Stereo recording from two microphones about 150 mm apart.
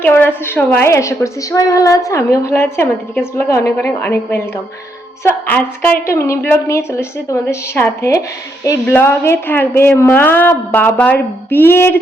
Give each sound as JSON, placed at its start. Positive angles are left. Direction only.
{"t": 0.0, "sound": "a woman's voice", "side_deg": 15}